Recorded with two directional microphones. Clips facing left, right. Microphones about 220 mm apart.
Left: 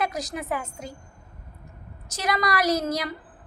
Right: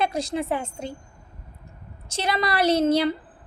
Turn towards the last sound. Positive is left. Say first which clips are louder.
# right 6 dB
turn(degrees=-25)  # may be behind; listen again after turning